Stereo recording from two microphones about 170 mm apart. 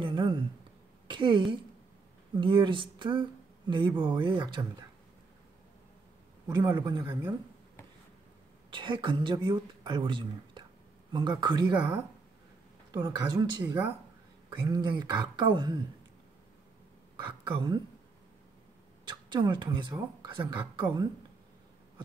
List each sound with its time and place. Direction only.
0.0 s a sound: 25° right (ahead or behind)
1.0 s a woman's voice: 30° right (ahead or behind)
6.4 s speech: 25° right (ahead or behind)
8.6 s a woman's voice: 30° right (ahead or behind)
12.9 s speech: 20° right (ahead or behind)
17.2 s speech: 25° right (ahead or behind)
19.0 s speech: 25° right (ahead or behind)